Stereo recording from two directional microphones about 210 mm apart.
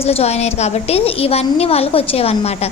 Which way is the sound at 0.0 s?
30° left (ahead or behind).